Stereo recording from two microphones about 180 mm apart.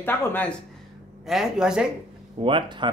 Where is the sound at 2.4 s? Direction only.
30° right (ahead or behind).